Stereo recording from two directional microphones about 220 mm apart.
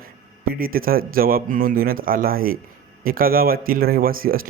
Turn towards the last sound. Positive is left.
turn(degrees=-40)  # may be behind; listen again after turning